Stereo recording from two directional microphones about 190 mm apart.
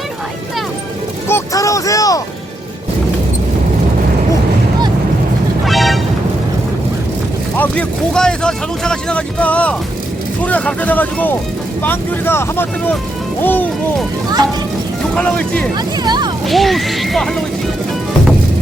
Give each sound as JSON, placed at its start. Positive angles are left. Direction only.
{"t": 1.3, "sound": "music", "side_deg": 15}
{"t": 5.6, "sound": "music", "side_deg": 0}
{"t": 7.5, "sound": "speech", "side_deg": 10}
{"t": 15.1, "sound": "speech", "side_deg": 5}
{"t": 16.0, "sound": "speech", "side_deg": -20}
{"t": 16.5, "sound": "speech", "side_deg": 0}